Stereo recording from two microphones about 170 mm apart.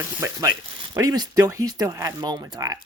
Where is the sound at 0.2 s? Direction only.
15° right (ahead or behind).